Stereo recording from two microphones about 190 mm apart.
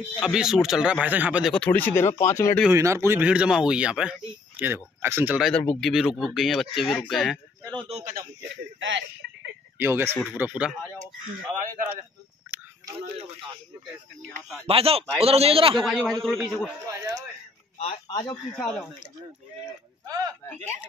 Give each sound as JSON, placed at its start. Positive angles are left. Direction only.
{"t": 0.2, "sound": "speech", "side_deg": -5}
{"t": 1.5, "sound": "speech", "side_deg": 10}
{"t": 2.7, "sound": "speech", "side_deg": -15}
{"t": 5.5, "sound": "speech", "side_deg": 5}
{"t": 7.9, "sound": "speech", "side_deg": -40}
{"t": 8.4, "sound": "speech", "side_deg": -75}
{"t": 9.8, "sound": "speech", "side_deg": -10}
{"t": 12.5, "sound": "a sound", "side_deg": -10}
{"t": 14.7, "sound": "speech", "side_deg": -30}
{"t": 15.8, "sound": "speech", "side_deg": 0}
{"t": 16.9, "sound": "speech", "side_deg": -15}
{"t": 17.7, "sound": "speech", "side_deg": 30}
{"t": 18.6, "sound": "speech", "side_deg": 5}
{"t": 20.1, "sound": "speech", "side_deg": -20}